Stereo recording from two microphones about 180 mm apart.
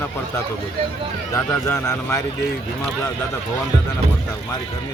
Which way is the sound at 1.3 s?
15° left (ahead or behind).